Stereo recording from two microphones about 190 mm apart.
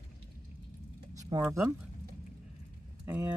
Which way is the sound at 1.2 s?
15° right (ahead or behind).